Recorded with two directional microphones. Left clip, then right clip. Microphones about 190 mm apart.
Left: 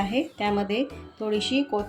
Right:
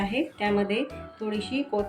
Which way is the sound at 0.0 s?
50° left (ahead or behind).